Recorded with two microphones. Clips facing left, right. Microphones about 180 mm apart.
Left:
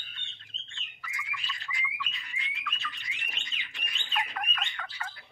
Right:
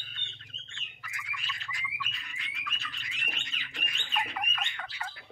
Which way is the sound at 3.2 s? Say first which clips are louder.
Right 3 dB; 55° right (ahead or behind).